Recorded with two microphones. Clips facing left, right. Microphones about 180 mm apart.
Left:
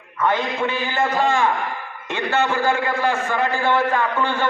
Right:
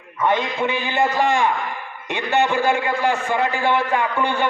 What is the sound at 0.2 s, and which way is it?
A man's voice, 15° right (ahead or behind).